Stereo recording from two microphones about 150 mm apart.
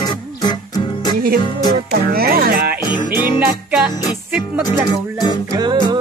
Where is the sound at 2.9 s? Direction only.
30° left (ahead or behind).